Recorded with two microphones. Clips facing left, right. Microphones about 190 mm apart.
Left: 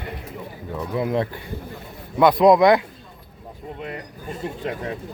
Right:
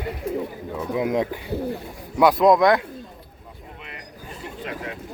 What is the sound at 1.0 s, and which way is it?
Speech, 15° right (ahead or behind).